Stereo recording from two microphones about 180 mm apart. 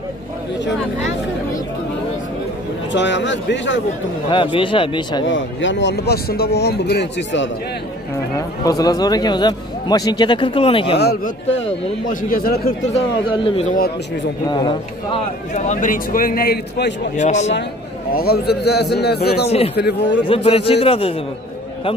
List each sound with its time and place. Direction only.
2.9 s speech: 80° left
4.3 s speech: 30° left (ahead or behind)
5.2 s speech: 90° left
8.4 s speech: 20° left (ahead or behind)
12.1 s speech: 50° left (ahead or behind)
12.9 s a man's voice: 30° left (ahead or behind)
15.5 s speech: 45° left (ahead or behind); by 16.9 s 65° left (ahead or behind)
17.2 s a man's voice: 40° left (ahead or behind)
18.1 s a man's voice: 60° left (ahead or behind)
19.4 s a man's voice: 35° left (ahead or behind)
19.7 s speech: 70° left (ahead or behind)
20.2 s a man's voice: 30° left (ahead or behind)